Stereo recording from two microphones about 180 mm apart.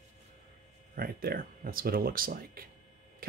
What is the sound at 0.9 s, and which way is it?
Speech, 55° right (ahead or behind).